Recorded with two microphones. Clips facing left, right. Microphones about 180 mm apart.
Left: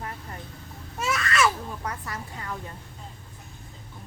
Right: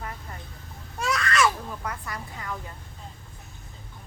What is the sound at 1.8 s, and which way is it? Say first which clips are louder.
Speech: even; 30° left (ahead or behind).